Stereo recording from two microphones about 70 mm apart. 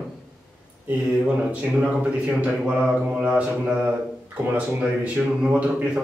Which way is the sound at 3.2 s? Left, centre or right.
Centre.